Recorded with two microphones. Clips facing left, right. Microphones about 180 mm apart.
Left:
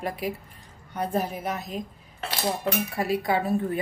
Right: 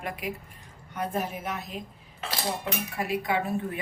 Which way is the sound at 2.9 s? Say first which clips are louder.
Left 1 dB; 35° left (ahead or behind).